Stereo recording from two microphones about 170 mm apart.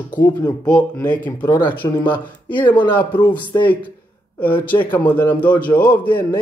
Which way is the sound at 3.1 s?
30° left (ahead or behind).